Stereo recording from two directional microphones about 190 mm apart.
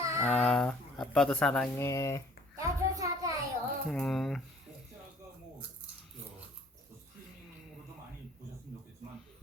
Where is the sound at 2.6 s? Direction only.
20° right (ahead or behind).